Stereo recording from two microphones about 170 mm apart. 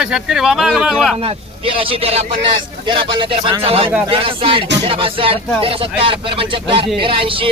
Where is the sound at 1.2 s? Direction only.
35° right (ahead or behind).